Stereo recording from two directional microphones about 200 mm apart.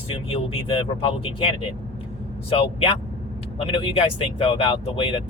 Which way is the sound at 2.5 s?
30° left (ahead or behind).